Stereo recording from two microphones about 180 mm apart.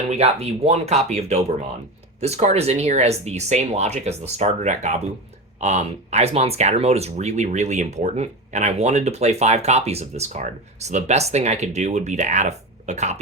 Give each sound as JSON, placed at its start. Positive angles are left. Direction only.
{"t": 0.1, "sound": "speech", "side_deg": -35}